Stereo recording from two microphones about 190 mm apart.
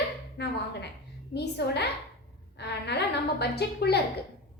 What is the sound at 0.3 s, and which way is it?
A woman's voice, 65° left (ahead or behind).